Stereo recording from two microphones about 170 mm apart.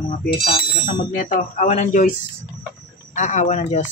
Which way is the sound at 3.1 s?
45° left (ahead or behind).